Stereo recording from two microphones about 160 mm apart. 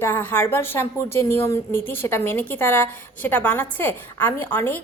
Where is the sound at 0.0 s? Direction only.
15° left (ahead or behind).